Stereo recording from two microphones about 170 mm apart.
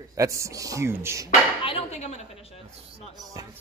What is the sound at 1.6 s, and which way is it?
Speech, 35° left (ahead or behind).